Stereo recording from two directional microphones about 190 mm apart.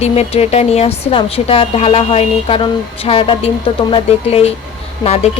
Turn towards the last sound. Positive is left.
turn(degrees=35)  # may be behind; listen again after turning